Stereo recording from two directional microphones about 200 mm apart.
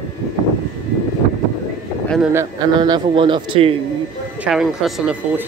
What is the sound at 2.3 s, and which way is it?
A man's voice, 15° right (ahead or behind).